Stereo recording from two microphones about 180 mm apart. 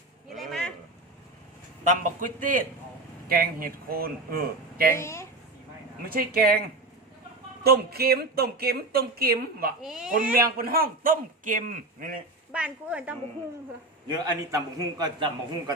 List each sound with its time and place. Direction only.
0.3 s a sound: 5° left (ahead or behind)
1.8 s a man's voice: 45° right (ahead or behind)
4.9 s a woman's voice: 15° left (ahead or behind)
6.1 s speech: 55° right (ahead or behind)
7.6 s speech: 60° right (ahead or behind)
9.8 s speech: centre (ahead or behind)
10.3 s a man's voice: 55° right (ahead or behind)
12.5 s a woman's voice: 5° right (ahead or behind)
14.5 s a man's voice: 20° right (ahead or behind)